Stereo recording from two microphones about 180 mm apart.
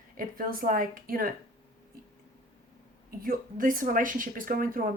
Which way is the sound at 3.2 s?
50° right (ahead or behind).